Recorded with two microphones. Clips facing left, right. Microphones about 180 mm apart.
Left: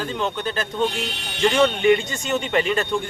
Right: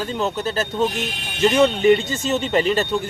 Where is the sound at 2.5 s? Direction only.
35° right (ahead or behind).